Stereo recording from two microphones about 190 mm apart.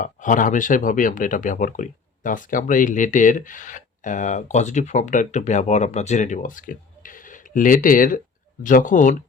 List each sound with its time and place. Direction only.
0.0 s speech: 45° left (ahead or behind)